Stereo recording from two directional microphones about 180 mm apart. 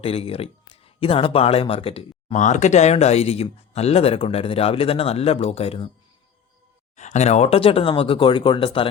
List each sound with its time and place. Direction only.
0.0 s speech: 30° left (ahead or behind)
6.9 s speech: 40° left (ahead or behind)